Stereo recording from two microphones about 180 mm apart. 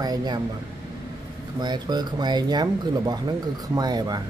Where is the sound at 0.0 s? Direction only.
20° right (ahead or behind).